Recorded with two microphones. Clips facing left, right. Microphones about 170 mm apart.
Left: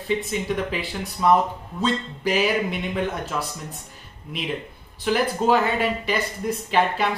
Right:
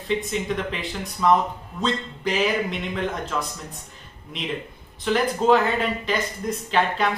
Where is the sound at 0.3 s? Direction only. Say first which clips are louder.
Left 1 dB; 5° left (ahead or behind).